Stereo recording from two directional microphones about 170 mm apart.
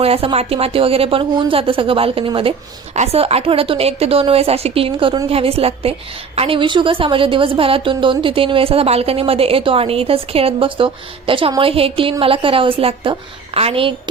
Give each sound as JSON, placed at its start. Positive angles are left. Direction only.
{"t": 0.0, "sound": "speech", "side_deg": -35}